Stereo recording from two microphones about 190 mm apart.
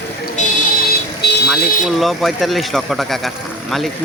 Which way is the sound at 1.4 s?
Centre (ahead or behind).